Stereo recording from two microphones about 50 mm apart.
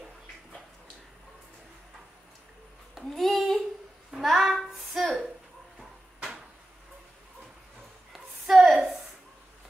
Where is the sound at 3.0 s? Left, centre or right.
Centre.